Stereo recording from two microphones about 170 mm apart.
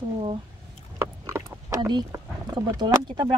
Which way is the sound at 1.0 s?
15° right (ahead or behind).